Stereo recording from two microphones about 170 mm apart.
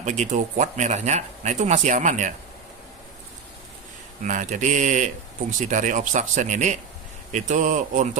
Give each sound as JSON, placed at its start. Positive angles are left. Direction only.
{"t": 0.0, "sound": "speech", "side_deg": -45}
{"t": 4.2, "sound": "speech", "side_deg": -50}